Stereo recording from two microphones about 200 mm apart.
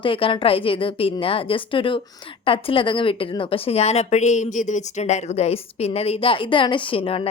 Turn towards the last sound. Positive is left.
turn(degrees=25)  # may be behind; listen again after turning